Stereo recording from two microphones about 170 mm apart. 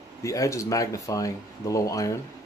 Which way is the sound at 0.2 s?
20° left (ahead or behind).